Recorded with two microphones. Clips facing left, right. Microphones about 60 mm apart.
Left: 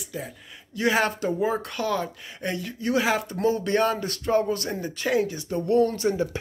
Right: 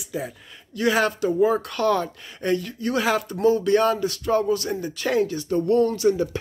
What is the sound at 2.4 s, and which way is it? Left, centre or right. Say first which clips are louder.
Speech: right 4 dB; left.